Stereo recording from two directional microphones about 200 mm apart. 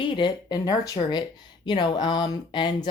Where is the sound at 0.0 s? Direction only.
20° left (ahead or behind).